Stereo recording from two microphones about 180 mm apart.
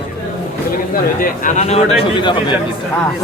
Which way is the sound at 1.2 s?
45° left (ahead or behind).